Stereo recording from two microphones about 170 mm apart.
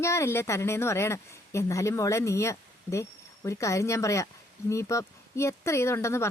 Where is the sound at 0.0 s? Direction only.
15° left (ahead or behind).